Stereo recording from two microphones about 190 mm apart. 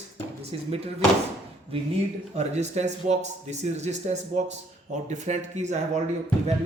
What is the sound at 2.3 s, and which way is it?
Speech, 35° right (ahead or behind).